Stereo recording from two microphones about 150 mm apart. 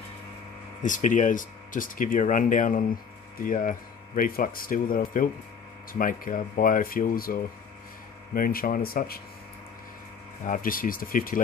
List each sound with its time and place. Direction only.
0.8 s speech: 60° left (ahead or behind); by 7.3 s 75° left (ahead or behind)
8.4 s speech: 75° left (ahead or behind)
10.4 s speech: 65° left (ahead or behind)